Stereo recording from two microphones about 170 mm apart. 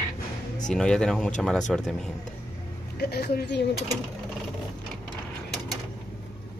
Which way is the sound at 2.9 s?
70° left (ahead or behind).